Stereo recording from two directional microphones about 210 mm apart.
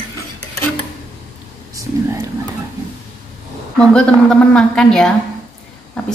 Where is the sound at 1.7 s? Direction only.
15° right (ahead or behind).